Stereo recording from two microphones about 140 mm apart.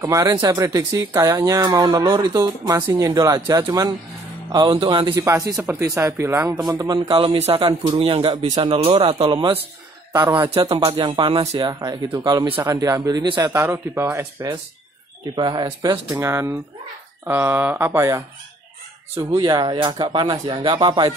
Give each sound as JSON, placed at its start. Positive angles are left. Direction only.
{"t": 0.0, "sound": "speech", "side_deg": -20}
{"t": 7.2, "sound": "a man's voice", "side_deg": -45}
{"t": 10.6, "sound": "speech", "side_deg": -30}
{"t": 13.5, "sound": "speech", "side_deg": -20}
{"t": 15.3, "sound": "speech", "side_deg": -30}
{"t": 19.3, "sound": "speech", "side_deg": -30}